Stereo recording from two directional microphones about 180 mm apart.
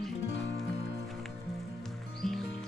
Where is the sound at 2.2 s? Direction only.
5° left (ahead or behind).